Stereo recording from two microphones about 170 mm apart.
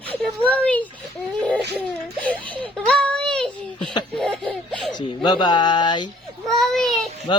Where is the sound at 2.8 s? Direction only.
5° left (ahead or behind).